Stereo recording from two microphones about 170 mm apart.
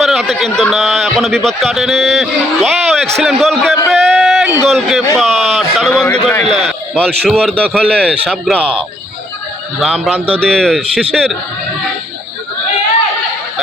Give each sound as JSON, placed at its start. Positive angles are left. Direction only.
{"t": 0.0, "sound": "a man's voice", "side_deg": 0}
{"t": 3.9, "sound": "a sound", "side_deg": 0}
{"t": 4.7, "sound": "a man's voice", "side_deg": 0}
{"t": 6.4, "sound": "a man's voice", "side_deg": -40}
{"t": 6.7, "sound": "a man's voice", "side_deg": 5}
{"t": 9.8, "sound": "a man's voice", "side_deg": 0}